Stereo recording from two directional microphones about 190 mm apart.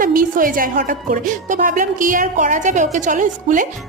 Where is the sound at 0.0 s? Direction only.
45° right (ahead or behind).